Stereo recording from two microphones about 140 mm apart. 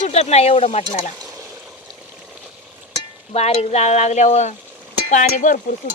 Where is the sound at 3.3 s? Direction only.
50° left (ahead or behind).